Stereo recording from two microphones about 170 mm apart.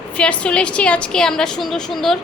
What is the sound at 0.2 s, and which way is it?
A woman's voice, 5° left (ahead or behind).